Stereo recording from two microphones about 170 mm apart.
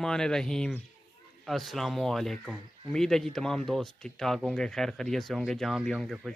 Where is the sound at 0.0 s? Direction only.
5° left (ahead or behind).